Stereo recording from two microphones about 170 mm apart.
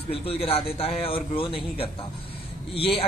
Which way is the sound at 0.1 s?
35° left (ahead or behind).